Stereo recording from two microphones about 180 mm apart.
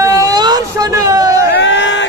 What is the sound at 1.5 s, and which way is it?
Crowd, 85° left.